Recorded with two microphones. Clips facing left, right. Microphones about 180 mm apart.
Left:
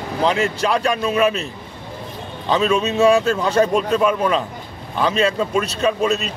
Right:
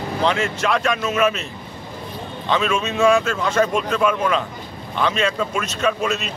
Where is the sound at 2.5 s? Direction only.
35° left (ahead or behind).